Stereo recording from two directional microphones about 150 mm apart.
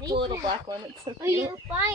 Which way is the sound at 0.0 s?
30° right (ahead or behind).